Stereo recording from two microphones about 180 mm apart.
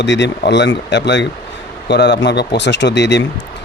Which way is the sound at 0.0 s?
80° left.